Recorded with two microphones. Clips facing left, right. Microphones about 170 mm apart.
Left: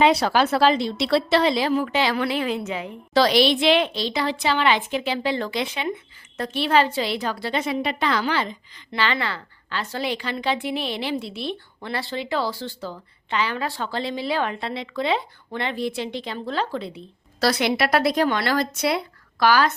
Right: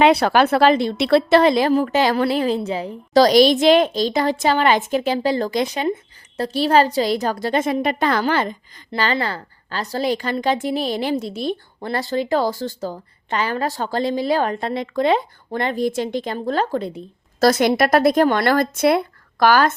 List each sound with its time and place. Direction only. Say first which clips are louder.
0.0 s a woman's voice: right 4 dB; 60° right (ahead or behind)
8.9 s a woman's voice: right 3 dB; 40° right (ahead or behind)